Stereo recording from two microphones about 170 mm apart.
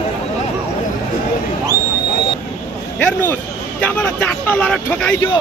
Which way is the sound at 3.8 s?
10° left (ahead or behind).